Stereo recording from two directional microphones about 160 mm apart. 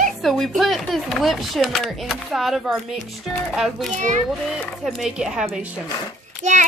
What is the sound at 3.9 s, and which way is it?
Child singing, 50° right (ahead or behind).